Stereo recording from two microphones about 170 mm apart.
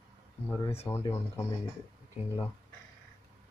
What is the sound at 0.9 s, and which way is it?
Speech, 15° left (ahead or behind).